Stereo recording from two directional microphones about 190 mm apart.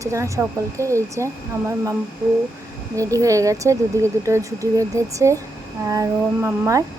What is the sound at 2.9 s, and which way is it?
Speech, 15° right (ahead or behind).